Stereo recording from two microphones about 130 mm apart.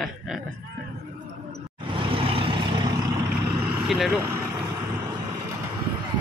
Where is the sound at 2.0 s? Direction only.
45° right (ahead or behind).